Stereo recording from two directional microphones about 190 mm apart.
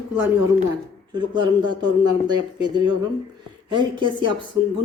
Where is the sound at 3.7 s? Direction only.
25° right (ahead or behind).